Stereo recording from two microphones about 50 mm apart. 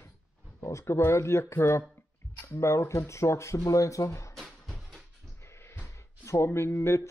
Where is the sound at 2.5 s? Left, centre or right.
Left.